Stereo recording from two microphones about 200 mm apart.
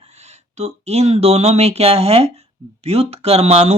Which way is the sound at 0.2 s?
35° right (ahead or behind).